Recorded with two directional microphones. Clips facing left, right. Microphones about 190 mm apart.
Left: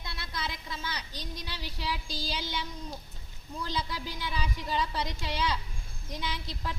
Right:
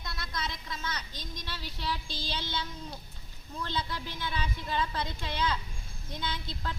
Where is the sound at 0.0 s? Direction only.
25° left (ahead or behind).